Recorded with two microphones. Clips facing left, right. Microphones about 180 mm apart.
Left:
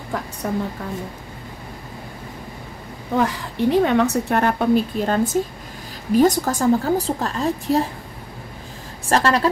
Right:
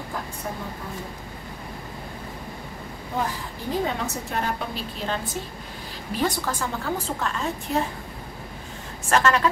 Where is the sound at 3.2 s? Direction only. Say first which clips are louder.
Left 8 dB; 75° left (ahead or behind); by 7.8 s 35° left (ahead or behind).